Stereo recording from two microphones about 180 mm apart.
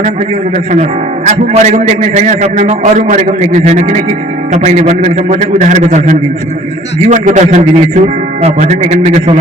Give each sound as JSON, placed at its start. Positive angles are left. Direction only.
{"t": 0.7, "sound": "a man's voice", "side_deg": -40}